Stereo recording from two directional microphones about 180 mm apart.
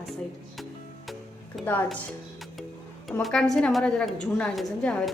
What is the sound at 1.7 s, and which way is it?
Speech, 10° left (ahead or behind).